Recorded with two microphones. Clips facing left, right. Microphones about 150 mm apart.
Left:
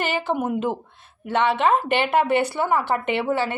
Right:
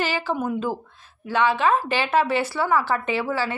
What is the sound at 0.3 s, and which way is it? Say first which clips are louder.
A woman's voice: left 2 dB; 20° left (ahead or behind).